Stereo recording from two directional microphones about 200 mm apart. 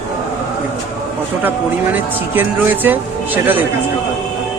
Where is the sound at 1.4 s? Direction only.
10° right (ahead or behind).